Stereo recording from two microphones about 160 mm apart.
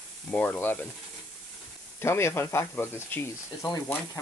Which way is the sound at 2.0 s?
15° left (ahead or behind).